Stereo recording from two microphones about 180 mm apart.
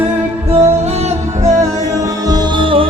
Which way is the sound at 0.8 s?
35° right (ahead or behind).